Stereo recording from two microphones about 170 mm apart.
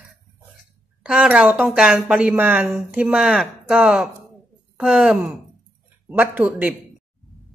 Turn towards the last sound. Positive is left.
turn(degrees=-10)  # may be behind; listen again after turning